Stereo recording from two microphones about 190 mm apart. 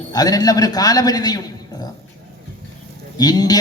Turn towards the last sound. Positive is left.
turn(degrees=20)  # may be behind; listen again after turning